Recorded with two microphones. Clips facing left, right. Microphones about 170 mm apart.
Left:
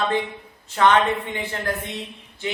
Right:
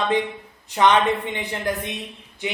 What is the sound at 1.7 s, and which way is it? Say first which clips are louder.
Speech: right 2 dB; 15° right (ahead or behind).